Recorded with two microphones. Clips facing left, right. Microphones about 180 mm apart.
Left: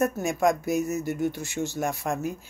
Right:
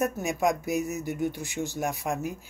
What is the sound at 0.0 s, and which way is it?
Speech, 15° right (ahead or behind).